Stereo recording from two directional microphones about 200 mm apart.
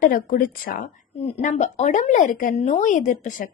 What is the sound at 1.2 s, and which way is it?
Speech, 35° left (ahead or behind).